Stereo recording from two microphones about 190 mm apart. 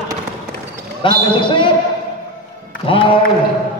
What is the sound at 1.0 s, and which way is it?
Mantra, 25° left (ahead or behind).